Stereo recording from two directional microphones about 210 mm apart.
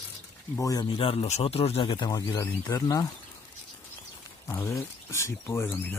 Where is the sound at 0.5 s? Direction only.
15° left (ahead or behind).